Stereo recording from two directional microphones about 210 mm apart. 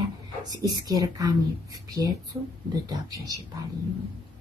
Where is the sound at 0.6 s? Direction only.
20° right (ahead or behind).